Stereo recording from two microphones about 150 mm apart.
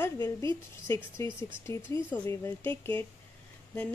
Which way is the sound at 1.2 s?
20° left (ahead or behind).